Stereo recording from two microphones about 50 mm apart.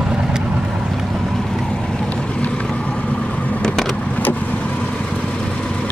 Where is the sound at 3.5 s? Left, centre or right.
Centre.